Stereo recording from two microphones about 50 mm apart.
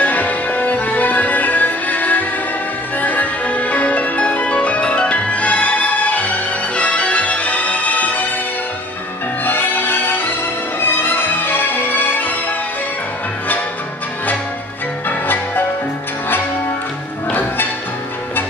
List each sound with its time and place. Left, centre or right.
0.0 s music: left
3.0 s marimba: left
6.8 s music: left
9.4 s music: left
15.0 s music: left